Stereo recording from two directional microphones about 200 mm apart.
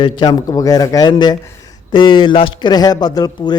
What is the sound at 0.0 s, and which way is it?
Speech, 20° left (ahead or behind).